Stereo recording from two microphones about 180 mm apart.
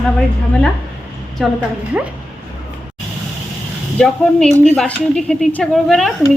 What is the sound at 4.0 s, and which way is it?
Speech, 5° left (ahead or behind).